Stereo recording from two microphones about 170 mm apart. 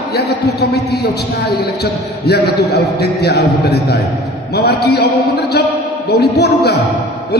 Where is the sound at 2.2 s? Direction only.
70° left (ahead or behind).